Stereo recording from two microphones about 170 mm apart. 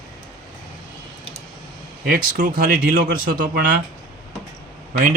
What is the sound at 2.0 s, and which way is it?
Speech, 60° right (ahead or behind).